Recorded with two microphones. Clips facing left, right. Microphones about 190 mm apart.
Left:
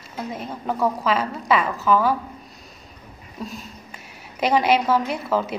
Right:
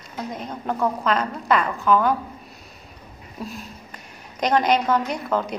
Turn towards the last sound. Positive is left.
turn(degrees=5)  # may be behind; listen again after turning